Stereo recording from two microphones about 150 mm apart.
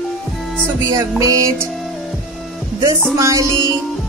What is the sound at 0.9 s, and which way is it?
Music, 20° right (ahead or behind).